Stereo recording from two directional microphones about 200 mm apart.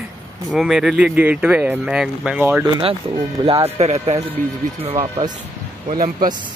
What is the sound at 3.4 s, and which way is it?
Speech, 30° right (ahead or behind).